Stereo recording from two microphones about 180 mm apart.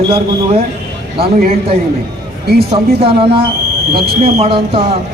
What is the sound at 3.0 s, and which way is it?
A man's voice, 30° right (ahead or behind).